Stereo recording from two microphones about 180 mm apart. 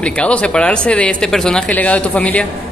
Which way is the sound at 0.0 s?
5° left (ahead or behind).